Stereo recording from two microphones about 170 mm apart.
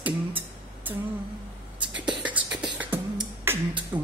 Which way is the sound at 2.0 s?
5° right (ahead or behind).